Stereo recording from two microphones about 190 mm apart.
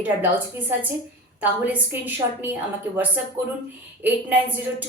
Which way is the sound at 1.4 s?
10° right (ahead or behind).